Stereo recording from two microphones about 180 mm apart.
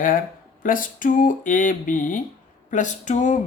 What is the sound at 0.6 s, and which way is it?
Speech, 50° left (ahead or behind).